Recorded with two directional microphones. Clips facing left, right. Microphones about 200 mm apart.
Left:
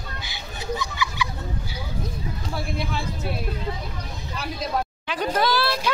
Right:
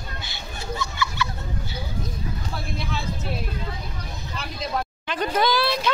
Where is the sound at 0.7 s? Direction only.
15° left (ahead or behind).